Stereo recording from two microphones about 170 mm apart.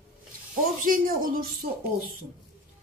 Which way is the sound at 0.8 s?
55° right (ahead or behind).